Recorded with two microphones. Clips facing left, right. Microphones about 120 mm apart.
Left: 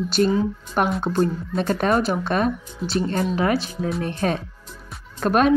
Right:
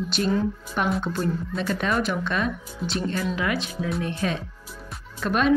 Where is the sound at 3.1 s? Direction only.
40° left (ahead or behind).